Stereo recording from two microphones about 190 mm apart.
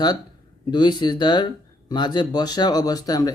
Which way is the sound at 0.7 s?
25° left (ahead or behind).